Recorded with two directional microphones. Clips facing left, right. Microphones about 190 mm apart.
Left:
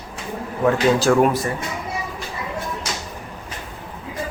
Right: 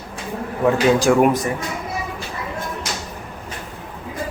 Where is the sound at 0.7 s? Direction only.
15° right (ahead or behind).